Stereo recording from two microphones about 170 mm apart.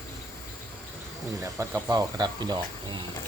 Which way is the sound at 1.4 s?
15° right (ahead or behind).